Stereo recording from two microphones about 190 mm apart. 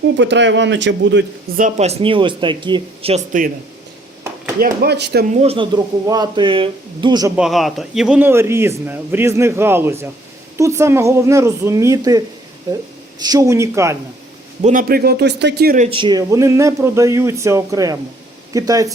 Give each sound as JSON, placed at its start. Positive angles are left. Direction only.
{"t": 0.2, "sound": "a man's voice", "side_deg": -70}
{"t": 1.5, "sound": "speech", "side_deg": -40}
{"t": 4.6, "sound": "speech", "side_deg": -55}
{"t": 5.4, "sound": "speech", "side_deg": -30}
{"t": 7.3, "sound": "a man's voice", "side_deg": 0}
{"t": 14.6, "sound": "a man's voice", "side_deg": -45}
{"t": 15.8, "sound": "a man's voice", "side_deg": -30}